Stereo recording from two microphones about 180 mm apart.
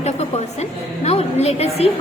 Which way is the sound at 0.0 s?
35° left (ahead or behind).